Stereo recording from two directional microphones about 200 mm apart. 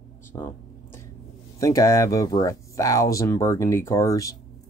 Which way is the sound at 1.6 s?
15° left (ahead or behind).